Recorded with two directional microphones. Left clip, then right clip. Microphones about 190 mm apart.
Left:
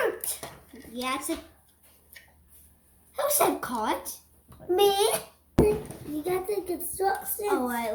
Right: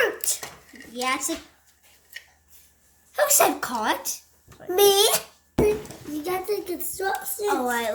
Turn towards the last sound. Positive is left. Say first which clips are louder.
# right 5 dB
turn(degrees=-45)  # may be behind; listen again after turning